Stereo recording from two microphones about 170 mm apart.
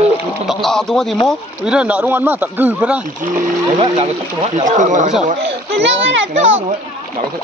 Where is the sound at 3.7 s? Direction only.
35° right (ahead or behind).